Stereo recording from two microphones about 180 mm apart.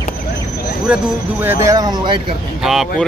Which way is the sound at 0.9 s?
5° right (ahead or behind).